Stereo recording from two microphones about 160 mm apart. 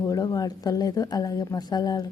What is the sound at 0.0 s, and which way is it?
Speech, 25° left (ahead or behind).